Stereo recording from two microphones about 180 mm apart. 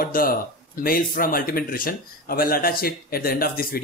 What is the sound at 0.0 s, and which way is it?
Speech, 50° left (ahead or behind).